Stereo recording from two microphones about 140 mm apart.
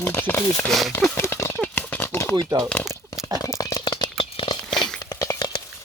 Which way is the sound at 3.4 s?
25° left (ahead or behind).